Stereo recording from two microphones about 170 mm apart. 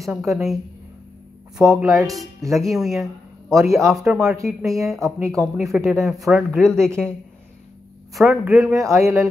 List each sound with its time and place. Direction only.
0.0 s speech: centre (ahead or behind)
1.6 s speech: 5° right (ahead or behind)
2.0 s speech: 20° right (ahead or behind)
2.5 s a man's voice: centre (ahead or behind)
8.1 s speech: centre (ahead or behind)
8.9 s speech: 15° right (ahead or behind)